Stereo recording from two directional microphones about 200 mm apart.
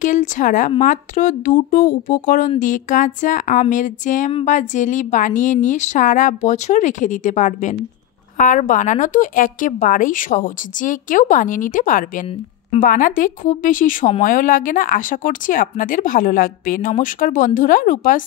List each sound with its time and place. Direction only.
0.0 s speech: 40° left (ahead or behind)